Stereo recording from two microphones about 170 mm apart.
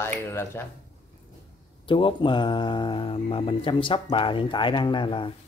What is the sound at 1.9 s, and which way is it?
Speech, 30° left (ahead or behind).